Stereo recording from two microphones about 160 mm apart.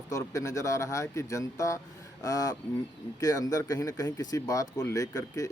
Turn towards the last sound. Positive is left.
turn(degrees=20)  # may be behind; listen again after turning